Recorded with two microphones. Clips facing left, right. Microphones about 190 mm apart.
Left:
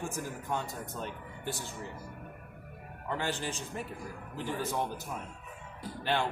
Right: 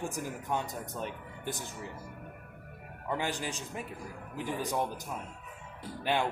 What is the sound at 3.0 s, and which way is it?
A man's voice, 10° right (ahead or behind).